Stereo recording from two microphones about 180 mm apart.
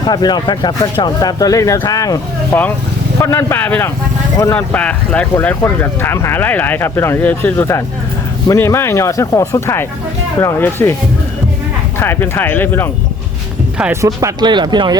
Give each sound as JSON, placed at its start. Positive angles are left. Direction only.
{"t": 0.0, "sound": "speech", "side_deg": 25}
{"t": 11.9, "sound": "speech", "side_deg": 15}
{"t": 13.7, "sound": "speech", "side_deg": -5}
{"t": 14.0, "sound": "speech", "side_deg": -15}